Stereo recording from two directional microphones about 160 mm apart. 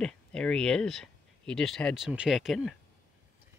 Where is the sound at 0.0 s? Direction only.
5° left (ahead or behind).